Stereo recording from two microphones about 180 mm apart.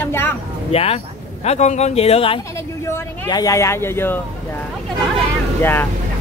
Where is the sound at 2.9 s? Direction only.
20° left (ahead or behind).